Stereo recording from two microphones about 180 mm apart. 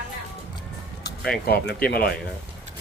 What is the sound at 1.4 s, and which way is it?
Speech, 60° left (ahead or behind).